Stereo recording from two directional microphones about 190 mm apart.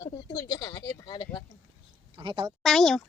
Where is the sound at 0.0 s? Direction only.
20° left (ahead or behind).